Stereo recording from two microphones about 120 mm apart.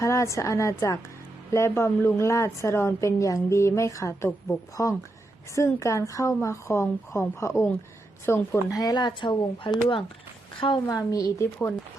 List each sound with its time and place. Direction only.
0.0 s a woman's voice: 25° left (ahead or behind)
8.8 s a woman's voice: 35° left (ahead or behind)